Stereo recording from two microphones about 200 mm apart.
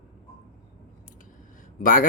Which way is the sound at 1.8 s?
45° left (ahead or behind).